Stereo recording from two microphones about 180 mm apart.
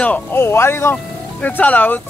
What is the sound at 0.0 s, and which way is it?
Speech, 10° left (ahead or behind).